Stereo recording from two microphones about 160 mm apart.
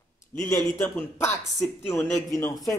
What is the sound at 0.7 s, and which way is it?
A man's voice, 15° left (ahead or behind).